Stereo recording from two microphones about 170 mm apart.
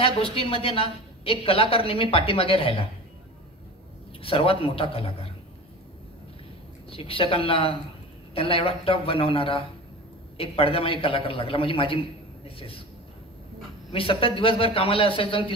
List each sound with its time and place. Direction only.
0.0 s a woman's voice: 35° left (ahead or behind)
4.2 s a woman's voice: 35° left (ahead or behind)
6.9 s a woman's voice: 35° left (ahead or behind)
12.4 s a sound: 35° left (ahead or behind)
13.9 s a woman's voice: 35° left (ahead or behind)